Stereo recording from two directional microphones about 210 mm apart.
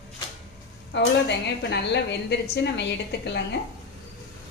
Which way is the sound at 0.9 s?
55° left (ahead or behind).